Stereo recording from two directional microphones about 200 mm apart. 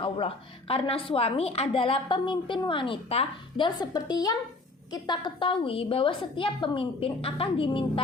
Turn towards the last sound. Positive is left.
turn(degrees=25)  # may be behind; listen again after turning